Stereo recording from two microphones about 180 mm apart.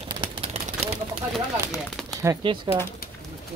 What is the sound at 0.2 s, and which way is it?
Vehicle, 30° right (ahead or behind).